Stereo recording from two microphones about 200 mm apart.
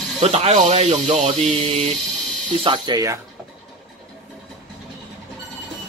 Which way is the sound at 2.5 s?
25° right (ahead or behind).